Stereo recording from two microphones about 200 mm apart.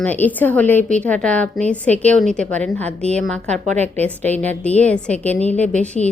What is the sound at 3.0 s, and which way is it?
Speech, 35° right (ahead or behind).